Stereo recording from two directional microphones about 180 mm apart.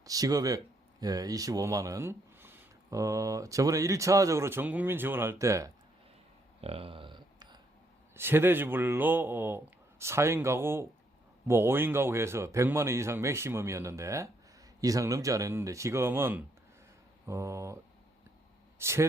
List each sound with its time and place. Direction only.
0.0 s speech: 20° right (ahead or behind)
6.6 s a sound: 35° right (ahead or behind)
8.1 s speech: 10° right (ahead or behind)
18.8 s speech: 15° right (ahead or behind)